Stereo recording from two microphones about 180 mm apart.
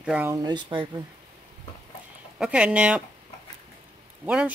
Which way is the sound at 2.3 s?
5° right (ahead or behind).